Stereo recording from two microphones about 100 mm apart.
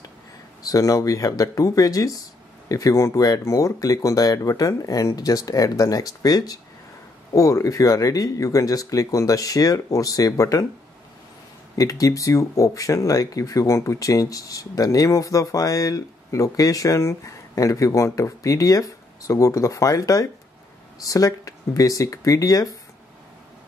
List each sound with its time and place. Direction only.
0.6 s speech: 35° left (ahead or behind)
11.7 s speech: 35° left (ahead or behind)